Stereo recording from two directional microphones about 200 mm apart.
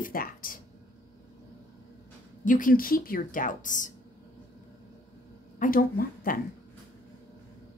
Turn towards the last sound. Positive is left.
turn(degrees=45)  # may be behind; listen again after turning